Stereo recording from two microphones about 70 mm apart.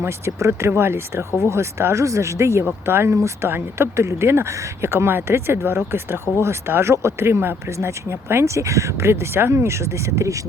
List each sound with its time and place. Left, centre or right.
0.0 s speech: right